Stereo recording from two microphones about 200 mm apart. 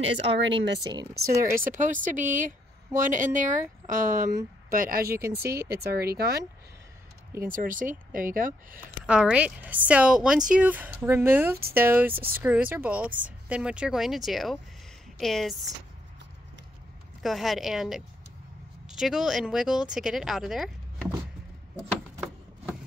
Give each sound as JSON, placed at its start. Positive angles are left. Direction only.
{"t": 0.4, "sound": "speech", "side_deg": -65}
{"t": 1.1, "sound": "speech", "side_deg": -45}
{"t": 5.2, "sound": "speech", "side_deg": -10}
{"t": 5.6, "sound": "speech", "side_deg": -50}
{"t": 7.4, "sound": "speech", "side_deg": -45}
{"t": 9.0, "sound": "speech", "side_deg": -5}
{"t": 17.2, "sound": "speech", "side_deg": 0}